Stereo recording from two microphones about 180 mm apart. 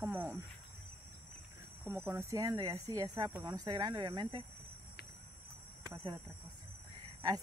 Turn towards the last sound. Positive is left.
turn(degrees=-20)  # may be behind; listen again after turning